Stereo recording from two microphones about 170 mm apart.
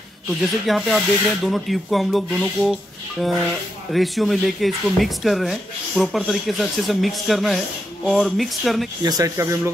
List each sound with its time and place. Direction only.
0.3 s speech: centre (ahead or behind)
9.0 s speech: 20° right (ahead or behind)